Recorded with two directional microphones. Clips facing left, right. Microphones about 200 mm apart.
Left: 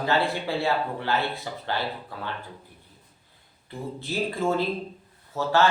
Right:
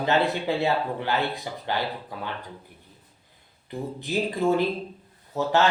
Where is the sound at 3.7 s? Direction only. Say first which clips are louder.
Right 3 dB; 15° right (ahead or behind).